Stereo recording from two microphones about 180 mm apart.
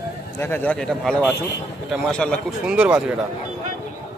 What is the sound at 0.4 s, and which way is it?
Speech, 10° left (ahead or behind).